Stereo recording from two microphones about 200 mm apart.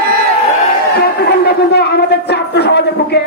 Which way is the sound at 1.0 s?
55° left (ahead or behind).